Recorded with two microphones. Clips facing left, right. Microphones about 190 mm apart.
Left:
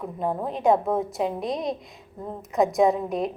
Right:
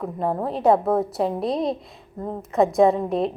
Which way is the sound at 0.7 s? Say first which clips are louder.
Right 3 dB; 75° right (ahead or behind).